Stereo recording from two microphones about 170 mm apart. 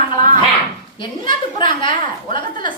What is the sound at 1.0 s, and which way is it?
A woman's voice, 25° left (ahead or behind).